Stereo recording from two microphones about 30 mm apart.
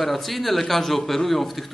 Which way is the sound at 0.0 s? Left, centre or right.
Centre.